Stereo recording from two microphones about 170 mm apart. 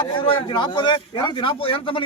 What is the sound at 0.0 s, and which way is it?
A man's voice, 30° left (ahead or behind).